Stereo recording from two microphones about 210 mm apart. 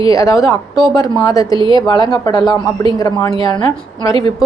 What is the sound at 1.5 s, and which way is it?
Speech, 25° right (ahead or behind).